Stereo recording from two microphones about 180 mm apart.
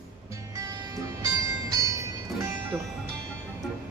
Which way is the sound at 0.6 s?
20° right (ahead or behind).